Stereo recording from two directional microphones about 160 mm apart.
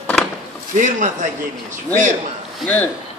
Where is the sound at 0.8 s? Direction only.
50° right (ahead or behind).